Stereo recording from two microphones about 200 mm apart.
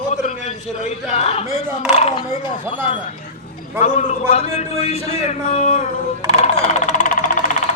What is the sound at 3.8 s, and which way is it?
A man's voice, 40° left (ahead or behind).